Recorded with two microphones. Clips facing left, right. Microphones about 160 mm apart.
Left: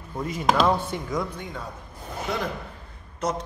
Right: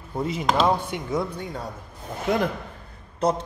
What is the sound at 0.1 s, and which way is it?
A man's voice, 25° right (ahead or behind).